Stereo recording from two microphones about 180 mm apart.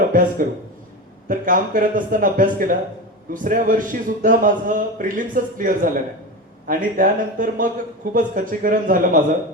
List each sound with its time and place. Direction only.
0.0 s a man's voice: 50° right (ahead or behind)